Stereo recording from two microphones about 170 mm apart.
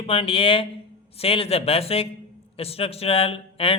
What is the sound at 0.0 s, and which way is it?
Speech, 35° left (ahead or behind).